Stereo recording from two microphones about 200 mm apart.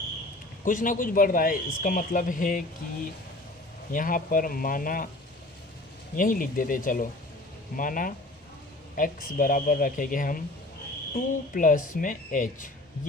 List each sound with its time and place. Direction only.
0.6 s speech: 40° left (ahead or behind)
6.1 s speech: 45° left (ahead or behind)
11.5 s speech: 40° left (ahead or behind)